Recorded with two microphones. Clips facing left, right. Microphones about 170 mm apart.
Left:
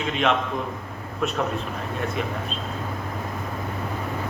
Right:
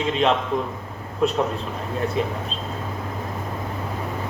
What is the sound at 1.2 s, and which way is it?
Speech, 30° right (ahead or behind).